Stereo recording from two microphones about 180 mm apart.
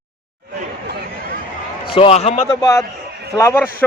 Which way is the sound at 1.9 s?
30° left (ahead or behind).